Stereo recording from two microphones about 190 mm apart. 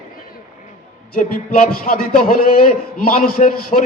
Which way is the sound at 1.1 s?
50° left (ahead or behind).